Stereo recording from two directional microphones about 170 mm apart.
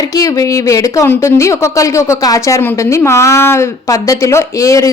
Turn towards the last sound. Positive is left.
turn(degrees=20)  # may be behind; listen again after turning